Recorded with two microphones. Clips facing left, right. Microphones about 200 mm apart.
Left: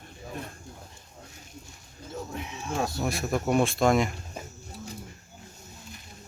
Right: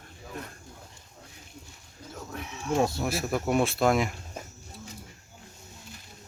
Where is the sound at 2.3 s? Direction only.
20° left (ahead or behind).